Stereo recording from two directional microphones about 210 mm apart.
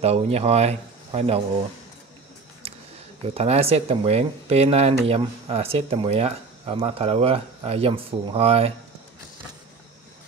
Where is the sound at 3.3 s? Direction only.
30° right (ahead or behind).